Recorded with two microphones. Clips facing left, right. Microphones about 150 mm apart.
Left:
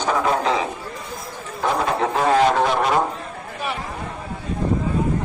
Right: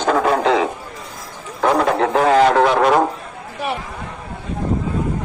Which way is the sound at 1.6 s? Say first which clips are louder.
Right 5 dB; 65° right (ahead or behind).